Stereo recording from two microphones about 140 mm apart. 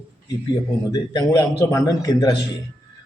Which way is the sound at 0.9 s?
25° left (ahead or behind).